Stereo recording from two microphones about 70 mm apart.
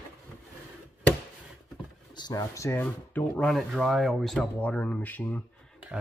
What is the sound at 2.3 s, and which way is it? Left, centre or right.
Speech, left.